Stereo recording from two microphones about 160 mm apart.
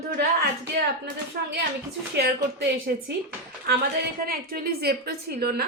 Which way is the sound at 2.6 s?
70° right (ahead or behind).